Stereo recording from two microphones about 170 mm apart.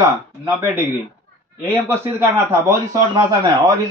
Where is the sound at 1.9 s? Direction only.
15° right (ahead or behind).